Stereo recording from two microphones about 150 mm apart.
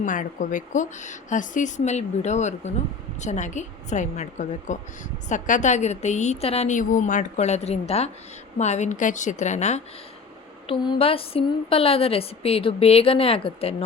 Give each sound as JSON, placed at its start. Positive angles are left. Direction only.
{"t": 0.0, "sound": "a woman's voice", "side_deg": 60}
{"t": 10.7, "sound": "a woman's voice", "side_deg": 35}